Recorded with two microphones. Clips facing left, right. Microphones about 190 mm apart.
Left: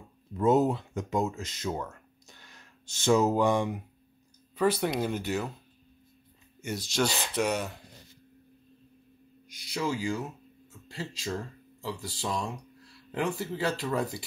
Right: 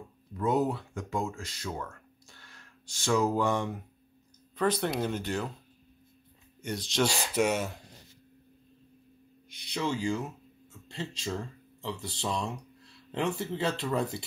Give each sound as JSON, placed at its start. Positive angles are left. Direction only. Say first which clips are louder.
{"t": 0.3, "sound": "speech", "louder": "left 4 dB", "side_deg": 25}
{"t": 6.6, "sound": "speech", "louder": "even", "side_deg": 5}
{"t": 9.7, "sound": "speech", "louder": "even", "side_deg": 5}